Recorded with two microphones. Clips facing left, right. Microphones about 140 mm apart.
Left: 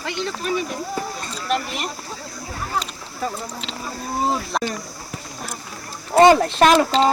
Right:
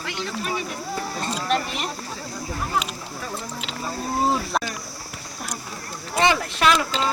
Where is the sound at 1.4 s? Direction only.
Centre (ahead or behind).